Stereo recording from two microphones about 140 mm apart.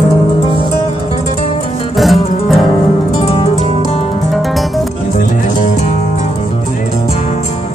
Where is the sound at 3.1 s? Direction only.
45° left (ahead or behind).